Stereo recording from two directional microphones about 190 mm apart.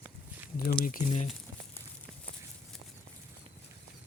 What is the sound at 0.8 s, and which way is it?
Speech, 40° left (ahead or behind).